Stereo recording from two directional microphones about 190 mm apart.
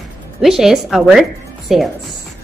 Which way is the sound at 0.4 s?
Centre (ahead or behind).